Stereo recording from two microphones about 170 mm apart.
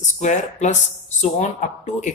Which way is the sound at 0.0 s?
45° left (ahead or behind).